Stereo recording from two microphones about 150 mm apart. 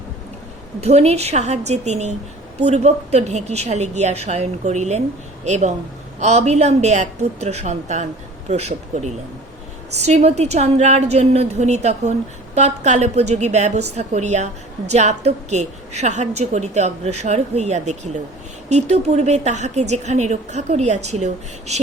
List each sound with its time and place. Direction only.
0.8 s a woman's voice: 45° right (ahead or behind)